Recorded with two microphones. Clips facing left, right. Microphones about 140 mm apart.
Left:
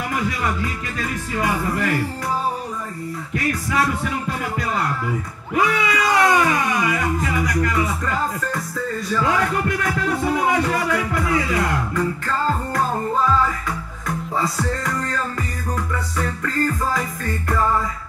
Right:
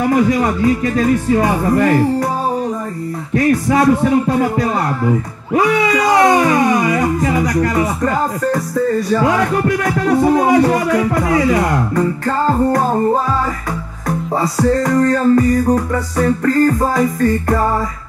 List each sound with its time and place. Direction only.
0.1 s speech: 40° right (ahead or behind)
3.3 s speech: 35° right (ahead or behind)
6.1 s speech: 30° right (ahead or behind)
6.4 s speech: 40° right (ahead or behind)